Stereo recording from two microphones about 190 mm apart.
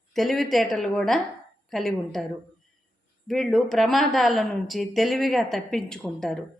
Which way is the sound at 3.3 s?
Centre (ahead or behind).